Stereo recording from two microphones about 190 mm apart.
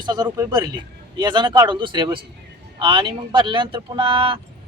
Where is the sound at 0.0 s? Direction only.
20° right (ahead or behind).